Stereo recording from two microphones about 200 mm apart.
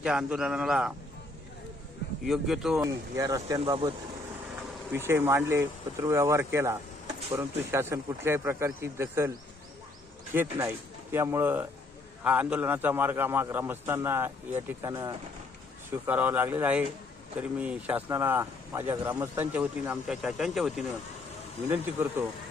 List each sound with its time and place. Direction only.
0.0 s a man's voice: 5° right (ahead or behind)
2.2 s a man's voice: centre (ahead or behind)
2.8 s speech: 15° right (ahead or behind)
4.9 s speech: 10° right (ahead or behind)
10.3 s speech: 10° right (ahead or behind)